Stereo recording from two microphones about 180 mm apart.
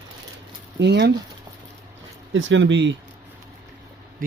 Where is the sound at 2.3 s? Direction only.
90° right.